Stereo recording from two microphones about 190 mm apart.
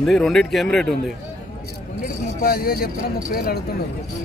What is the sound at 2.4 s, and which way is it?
Speech, 50° left (ahead or behind).